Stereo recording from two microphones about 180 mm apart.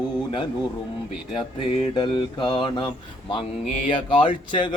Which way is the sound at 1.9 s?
25° left (ahead or behind).